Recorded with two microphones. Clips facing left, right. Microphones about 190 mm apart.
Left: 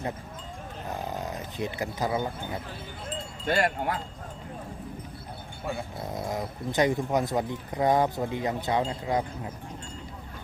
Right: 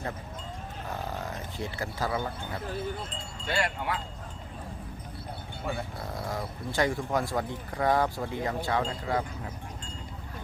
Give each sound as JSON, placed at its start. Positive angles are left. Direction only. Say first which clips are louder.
{"t": 0.9, "sound": "a sound", "louder": "left 2 dB", "side_deg": 20}
{"t": 3.4, "sound": "speech", "louder": "left 4 dB", "side_deg": 45}
{"t": 6.1, "sound": "speech", "louder": "left 3 dB", "side_deg": 20}